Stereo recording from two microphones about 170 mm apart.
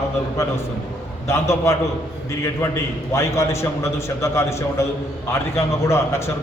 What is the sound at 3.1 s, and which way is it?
A man's voice, 15° left (ahead or behind).